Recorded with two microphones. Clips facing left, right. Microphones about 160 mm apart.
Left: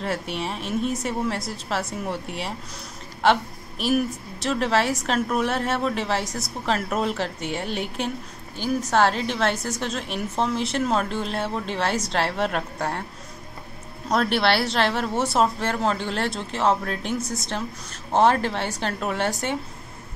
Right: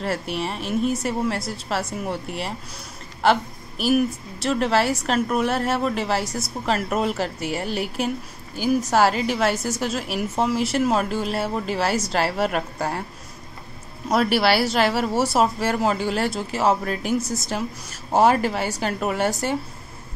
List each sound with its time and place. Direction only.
0.0 s a woman's voice: centre (ahead or behind)
14.0 s a woman's voice: 5° right (ahead or behind)